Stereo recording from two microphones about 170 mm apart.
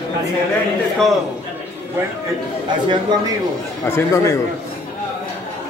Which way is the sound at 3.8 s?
15° left (ahead or behind).